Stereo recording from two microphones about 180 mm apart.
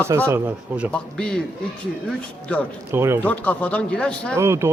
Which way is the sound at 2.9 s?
15° right (ahead or behind).